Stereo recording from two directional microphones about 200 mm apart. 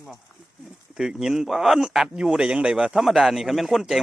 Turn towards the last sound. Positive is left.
turn(degrees=0)  # may be behind; listen again after turning